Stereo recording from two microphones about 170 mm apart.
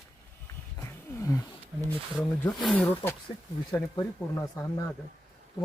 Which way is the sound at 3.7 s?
20° left (ahead or behind).